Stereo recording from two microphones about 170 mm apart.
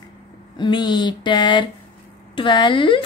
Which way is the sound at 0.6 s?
25° left (ahead or behind).